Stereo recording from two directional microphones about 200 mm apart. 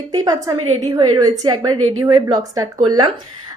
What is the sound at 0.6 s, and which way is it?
Speech, 30° right (ahead or behind).